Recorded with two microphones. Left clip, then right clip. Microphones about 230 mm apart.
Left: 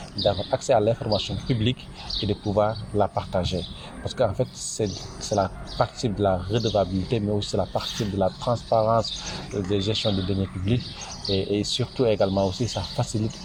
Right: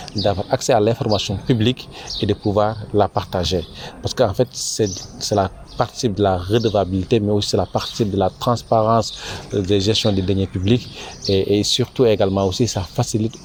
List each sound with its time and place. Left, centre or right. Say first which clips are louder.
0.2 s speech: right 4 dB; right